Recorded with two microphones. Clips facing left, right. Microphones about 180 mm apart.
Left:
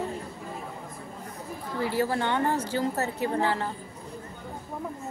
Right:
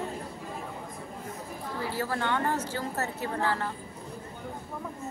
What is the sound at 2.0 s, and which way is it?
Speech, 20° left (ahead or behind).